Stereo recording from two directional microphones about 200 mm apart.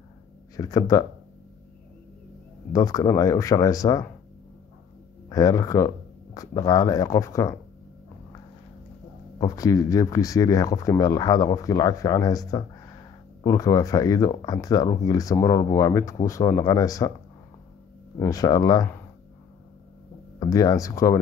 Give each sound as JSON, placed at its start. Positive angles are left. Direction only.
{"t": 0.6, "sound": "speech", "side_deg": 20}
{"t": 2.7, "sound": "speech", "side_deg": 15}
{"t": 5.3, "sound": "speech", "side_deg": 20}
{"t": 9.4, "sound": "speech", "side_deg": 15}
{"t": 18.1, "sound": "speech", "side_deg": 15}
{"t": 20.3, "sound": "speech", "side_deg": 20}